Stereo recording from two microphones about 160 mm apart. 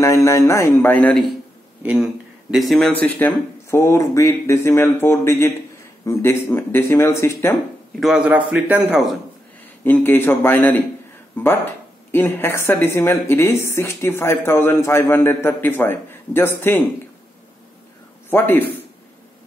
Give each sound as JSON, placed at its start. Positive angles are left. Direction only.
{"t": 0.0, "sound": "speech", "side_deg": 20}
{"t": 1.8, "sound": "speech", "side_deg": -10}
{"t": 8.0, "sound": "a man's voice", "side_deg": -5}
{"t": 9.8, "sound": "speech", "side_deg": 10}
{"t": 18.3, "sound": "speech", "side_deg": 15}